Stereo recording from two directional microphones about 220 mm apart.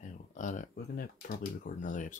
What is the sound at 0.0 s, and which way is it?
Speech, 35° left (ahead or behind).